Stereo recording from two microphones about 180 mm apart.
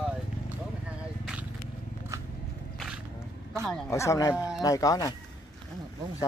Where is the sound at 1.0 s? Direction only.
5° right (ahead or behind).